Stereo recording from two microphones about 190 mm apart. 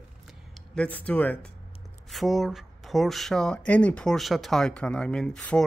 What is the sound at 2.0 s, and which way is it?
Speech, centre (ahead or behind).